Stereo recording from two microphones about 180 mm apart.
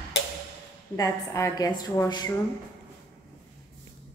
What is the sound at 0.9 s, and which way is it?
A woman's voice, 15° left (ahead or behind).